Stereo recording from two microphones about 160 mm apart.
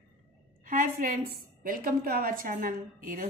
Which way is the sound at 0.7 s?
55° right (ahead or behind).